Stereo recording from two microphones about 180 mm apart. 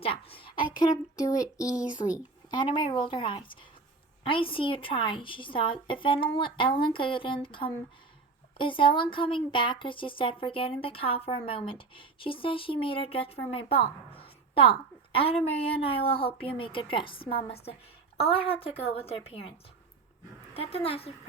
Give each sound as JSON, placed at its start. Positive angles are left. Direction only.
{"t": 0.0, "sound": "a sound", "side_deg": 30}
{"t": 0.8, "sound": "a woman's voice", "side_deg": 20}
{"t": 1.7, "sound": "speech", "side_deg": -5}
{"t": 2.5, "sound": "a woman's voice", "side_deg": 25}